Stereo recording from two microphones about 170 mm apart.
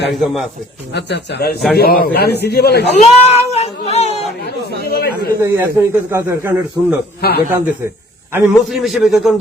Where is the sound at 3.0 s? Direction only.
40° left (ahead or behind).